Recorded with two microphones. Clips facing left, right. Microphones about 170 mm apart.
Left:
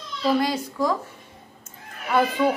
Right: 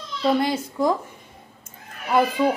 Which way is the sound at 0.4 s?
25° right (ahead or behind).